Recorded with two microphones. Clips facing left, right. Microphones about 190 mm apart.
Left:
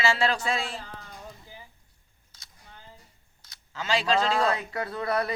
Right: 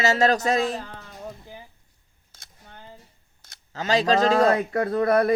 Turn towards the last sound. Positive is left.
turn(degrees=-50)  # may be behind; listen again after turning